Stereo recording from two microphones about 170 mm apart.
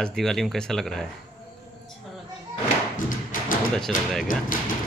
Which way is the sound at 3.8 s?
5° left (ahead or behind).